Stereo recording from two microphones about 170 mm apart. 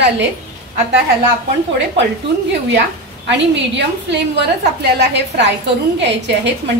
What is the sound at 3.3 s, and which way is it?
A woman's voice, 90° right.